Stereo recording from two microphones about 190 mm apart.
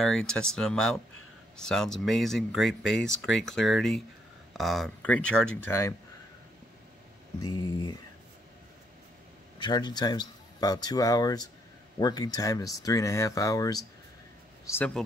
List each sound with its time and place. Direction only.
0.0 s speech: 5° left (ahead or behind)
7.3 s a man's voice: 20° left (ahead or behind)
9.6 s a man's voice: 20° left (ahead or behind)